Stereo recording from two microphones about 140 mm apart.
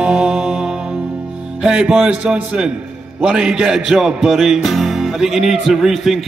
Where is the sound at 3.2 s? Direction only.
5° right (ahead or behind).